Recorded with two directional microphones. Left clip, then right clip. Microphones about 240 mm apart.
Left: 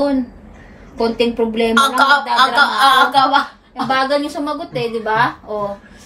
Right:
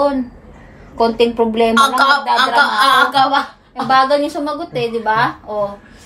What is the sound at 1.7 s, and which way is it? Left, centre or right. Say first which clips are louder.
A woman's voice: left 1 dB; centre.